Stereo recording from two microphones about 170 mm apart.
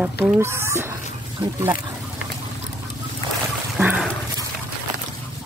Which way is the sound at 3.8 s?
10° right (ahead or behind).